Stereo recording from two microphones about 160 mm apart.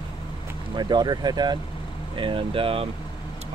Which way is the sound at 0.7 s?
25° right (ahead or behind).